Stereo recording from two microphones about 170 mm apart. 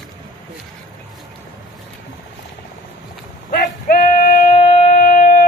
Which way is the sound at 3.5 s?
55° left (ahead or behind).